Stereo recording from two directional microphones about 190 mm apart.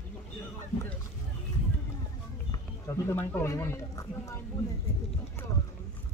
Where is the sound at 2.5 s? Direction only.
15° left (ahead or behind).